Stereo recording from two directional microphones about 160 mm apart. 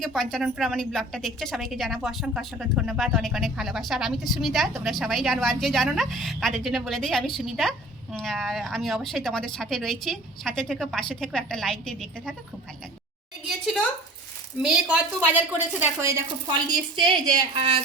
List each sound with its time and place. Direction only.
0.0 s a woman's voice: 5° left (ahead or behind)
14.6 s a woman's voice: 5° right (ahead or behind); by 17.7 s 35° right (ahead or behind)